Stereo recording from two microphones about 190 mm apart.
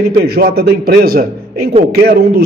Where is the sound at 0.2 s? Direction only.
55° right (ahead or behind).